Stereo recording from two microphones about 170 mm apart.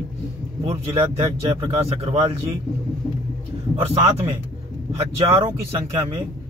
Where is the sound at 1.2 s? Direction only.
35° right (ahead or behind).